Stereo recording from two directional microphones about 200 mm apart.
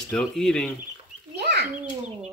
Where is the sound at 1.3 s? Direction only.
55° right (ahead or behind).